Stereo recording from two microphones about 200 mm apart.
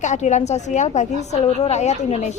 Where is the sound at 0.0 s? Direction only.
35° left (ahead or behind).